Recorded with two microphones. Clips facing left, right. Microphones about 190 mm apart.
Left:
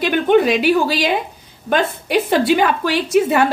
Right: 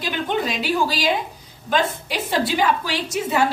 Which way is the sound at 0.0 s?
65° left (ahead or behind).